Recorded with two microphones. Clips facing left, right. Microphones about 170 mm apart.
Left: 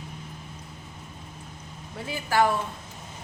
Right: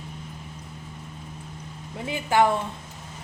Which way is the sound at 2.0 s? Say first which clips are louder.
Right 3 dB; 20° right (ahead or behind).